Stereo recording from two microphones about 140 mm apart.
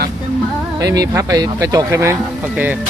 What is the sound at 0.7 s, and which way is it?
Speech, 25° right (ahead or behind).